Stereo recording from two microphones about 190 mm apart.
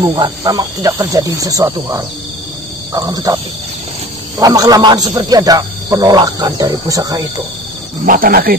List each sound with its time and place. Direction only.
0.0 s a man's voice: 25° right (ahead or behind)
4.4 s a man's voice: 20° right (ahead or behind)
8.0 s speech: 45° right (ahead or behind)